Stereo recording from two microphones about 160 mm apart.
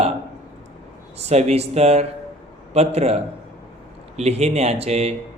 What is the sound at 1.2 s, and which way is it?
Speech, 40° right (ahead or behind).